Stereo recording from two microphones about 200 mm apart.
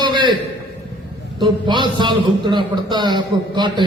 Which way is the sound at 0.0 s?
25° right (ahead or behind).